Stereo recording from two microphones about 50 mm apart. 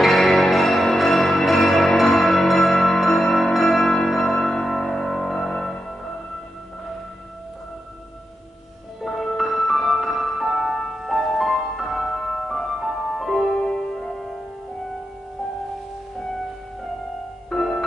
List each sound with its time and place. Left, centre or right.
0.0 s change ringing: centre
9.0 s music: centre
13.6 s music: centre
14.0 s music: centre
17.5 s music: centre